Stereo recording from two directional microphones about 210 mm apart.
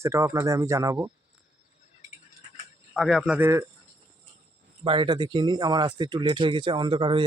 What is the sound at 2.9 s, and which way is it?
Speech, centre (ahead or behind).